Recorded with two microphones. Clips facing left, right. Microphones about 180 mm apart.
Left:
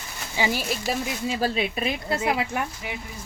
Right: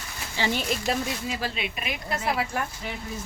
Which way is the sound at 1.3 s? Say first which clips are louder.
Left 6 dB; 35° left (ahead or behind).